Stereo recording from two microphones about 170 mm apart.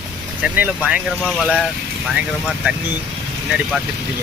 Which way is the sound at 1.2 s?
5° left (ahead or behind).